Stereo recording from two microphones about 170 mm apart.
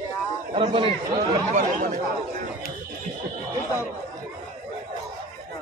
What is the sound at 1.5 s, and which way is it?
Speech, 50° right (ahead or behind).